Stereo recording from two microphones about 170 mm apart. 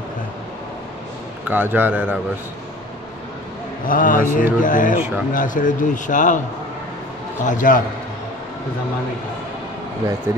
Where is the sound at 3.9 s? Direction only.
55° left (ahead or behind).